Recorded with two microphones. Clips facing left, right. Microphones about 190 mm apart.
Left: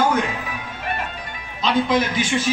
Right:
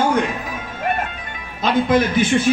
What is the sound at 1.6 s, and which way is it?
Speech, 55° right (ahead or behind).